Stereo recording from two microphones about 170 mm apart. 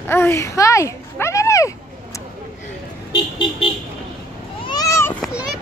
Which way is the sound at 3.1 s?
25° left (ahead or behind).